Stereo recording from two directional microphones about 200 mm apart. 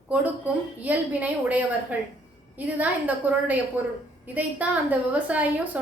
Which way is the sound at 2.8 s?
10° right (ahead or behind).